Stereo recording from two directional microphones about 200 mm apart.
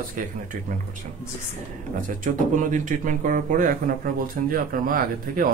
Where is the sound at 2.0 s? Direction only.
40° right (ahead or behind).